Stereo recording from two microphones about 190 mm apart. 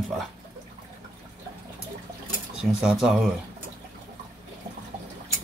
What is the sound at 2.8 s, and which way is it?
Speech, 5° right (ahead or behind).